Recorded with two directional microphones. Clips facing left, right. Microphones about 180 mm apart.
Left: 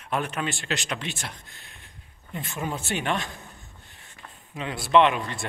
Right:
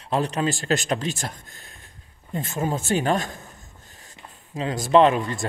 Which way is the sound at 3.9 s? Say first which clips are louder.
Right 3 dB; 40° right (ahead or behind).